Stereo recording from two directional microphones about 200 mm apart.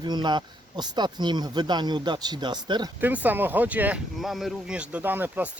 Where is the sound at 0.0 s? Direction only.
20° right (ahead or behind).